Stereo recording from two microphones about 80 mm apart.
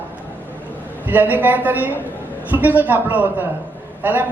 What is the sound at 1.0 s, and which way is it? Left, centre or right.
A man's voice, right.